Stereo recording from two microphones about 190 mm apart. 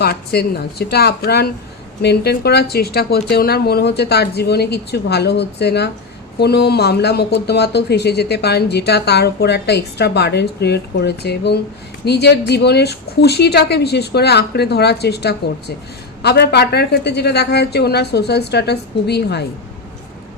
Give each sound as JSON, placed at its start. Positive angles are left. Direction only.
{"t": 0.0, "sound": "speech", "side_deg": 55}